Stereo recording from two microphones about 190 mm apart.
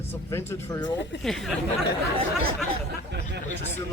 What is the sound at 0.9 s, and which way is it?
Speech, 70° left (ahead or behind).